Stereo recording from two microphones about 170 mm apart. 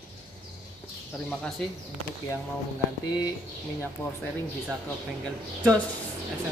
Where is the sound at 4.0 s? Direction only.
10° left (ahead or behind).